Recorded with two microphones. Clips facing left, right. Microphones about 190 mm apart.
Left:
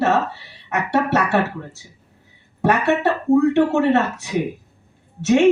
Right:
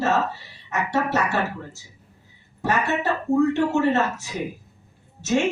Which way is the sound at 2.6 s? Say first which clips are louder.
Left 6 dB; 60° left (ahead or behind).